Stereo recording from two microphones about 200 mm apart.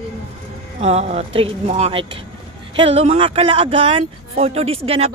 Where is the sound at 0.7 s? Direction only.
30° right (ahead or behind).